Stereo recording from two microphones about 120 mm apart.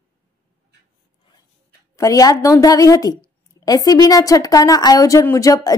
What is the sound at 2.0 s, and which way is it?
Speech, 30° left (ahead or behind).